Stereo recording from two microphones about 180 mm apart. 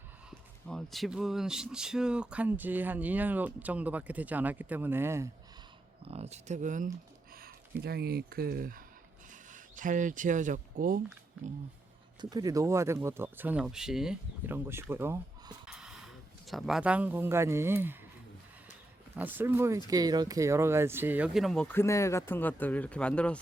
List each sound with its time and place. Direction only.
0.3 s speech: centre (ahead or behind); by 5.3 s 15° right (ahead or behind)
6.1 s speech: 35° right (ahead or behind)
7.8 s speech: 60° right (ahead or behind)
12.2 s speech: 20° right (ahead or behind)
15.6 s speech: 5° right (ahead or behind)
19.1 s speech: 10° right (ahead or behind); by 23.4 s 5° left (ahead or behind)